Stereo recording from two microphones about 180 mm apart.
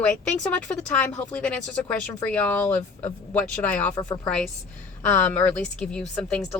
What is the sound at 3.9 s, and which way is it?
Speech, 20° left (ahead or behind).